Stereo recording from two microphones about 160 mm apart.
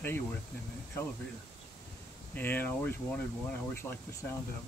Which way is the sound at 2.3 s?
10° left (ahead or behind).